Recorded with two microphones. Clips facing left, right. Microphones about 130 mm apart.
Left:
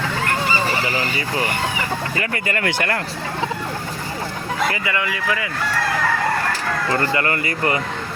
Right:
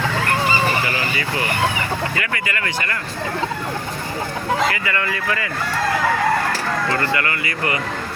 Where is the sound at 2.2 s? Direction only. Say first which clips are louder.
Left 2 dB; 40° left (ahead or behind).